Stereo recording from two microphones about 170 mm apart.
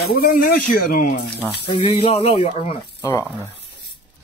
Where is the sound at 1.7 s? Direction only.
30° left (ahead or behind).